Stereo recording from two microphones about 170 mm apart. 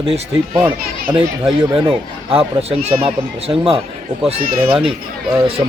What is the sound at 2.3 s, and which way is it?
Speech, 35° right (ahead or behind).